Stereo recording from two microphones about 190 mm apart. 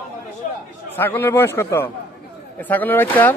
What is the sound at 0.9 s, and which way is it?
Speech, 10° left (ahead or behind).